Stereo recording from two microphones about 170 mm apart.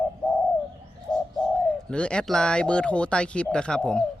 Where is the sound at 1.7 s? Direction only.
5° left (ahead or behind).